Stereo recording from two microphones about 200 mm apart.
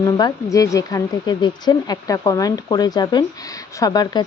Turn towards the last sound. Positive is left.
turn(degrees=20)  # may be behind; listen again after turning